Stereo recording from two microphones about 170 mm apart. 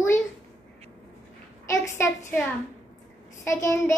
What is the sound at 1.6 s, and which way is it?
Child singing, 15° left (ahead or behind).